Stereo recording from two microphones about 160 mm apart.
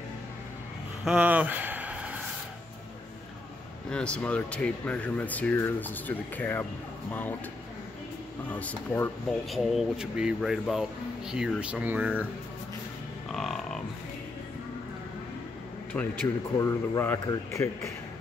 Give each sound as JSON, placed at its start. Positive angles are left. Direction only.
{"t": 1.0, "sound": "a sound", "side_deg": -10}
{"t": 3.9, "sound": "speech", "side_deg": 5}
{"t": 8.5, "sound": "speech", "side_deg": 10}
{"t": 9.5, "sound": "speech", "side_deg": 0}
{"t": 13.3, "sound": "music", "side_deg": 0}
{"t": 15.9, "sound": "speech", "side_deg": 10}
{"t": 16.5, "sound": "speech", "side_deg": 20}